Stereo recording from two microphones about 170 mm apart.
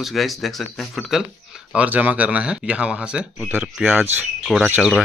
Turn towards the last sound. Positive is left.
turn(degrees=0)  # may be behind; listen again after turning